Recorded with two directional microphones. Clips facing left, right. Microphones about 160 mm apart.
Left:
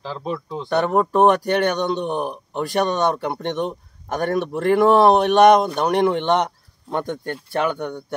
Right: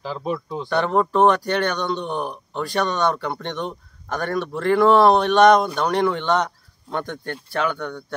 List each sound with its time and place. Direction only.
0.0 s speech: 10° right (ahead or behind)
0.7 s a man's voice: 15° left (ahead or behind)